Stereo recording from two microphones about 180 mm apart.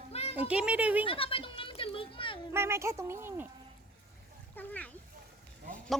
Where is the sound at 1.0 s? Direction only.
30° left (ahead or behind).